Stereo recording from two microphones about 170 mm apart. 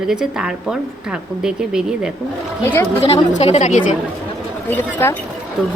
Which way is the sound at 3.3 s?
40° left (ahead or behind).